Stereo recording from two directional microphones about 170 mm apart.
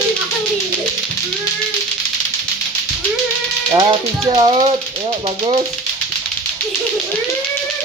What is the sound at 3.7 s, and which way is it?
Speech, 25° right (ahead or behind).